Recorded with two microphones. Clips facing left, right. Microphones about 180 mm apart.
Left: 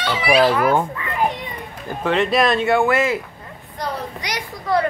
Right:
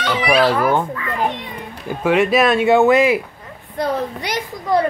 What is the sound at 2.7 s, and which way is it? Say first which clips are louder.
Speech: right 5 dB; 15° right (ahead or behind).